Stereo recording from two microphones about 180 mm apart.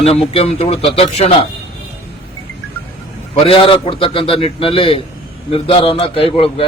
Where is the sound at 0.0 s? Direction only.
35° left (ahead or behind).